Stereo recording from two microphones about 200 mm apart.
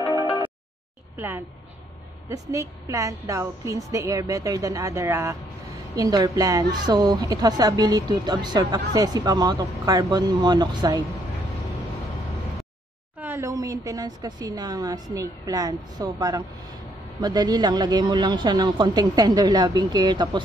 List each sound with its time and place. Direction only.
2.2 s a woman's voice: 15° right (ahead or behind)
13.2 s a woman's voice: 10° right (ahead or behind)